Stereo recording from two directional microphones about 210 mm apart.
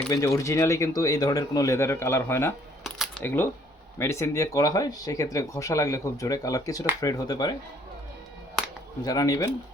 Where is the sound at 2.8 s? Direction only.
5° left (ahead or behind).